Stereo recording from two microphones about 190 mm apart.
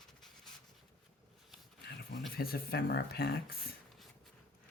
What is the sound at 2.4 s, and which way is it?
Speech, 55° left (ahead or behind).